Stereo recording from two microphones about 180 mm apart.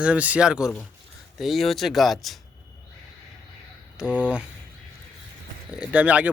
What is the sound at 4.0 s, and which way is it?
Speech, 5° right (ahead or behind).